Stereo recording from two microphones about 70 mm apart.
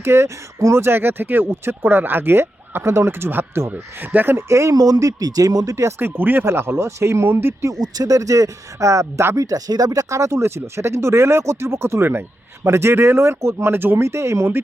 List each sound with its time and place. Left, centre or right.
0.0 s speech: right
4.7 s speech: right
6.0 s speech: right
7.7 s speech: right